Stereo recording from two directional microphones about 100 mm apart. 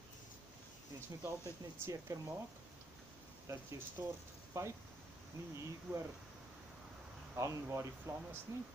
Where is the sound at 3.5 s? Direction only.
25° right (ahead or behind).